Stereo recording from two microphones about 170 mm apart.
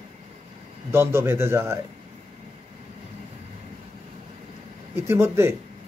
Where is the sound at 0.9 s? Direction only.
15° right (ahead or behind).